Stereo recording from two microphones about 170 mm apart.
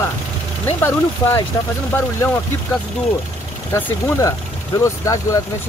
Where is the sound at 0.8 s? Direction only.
15° left (ahead or behind).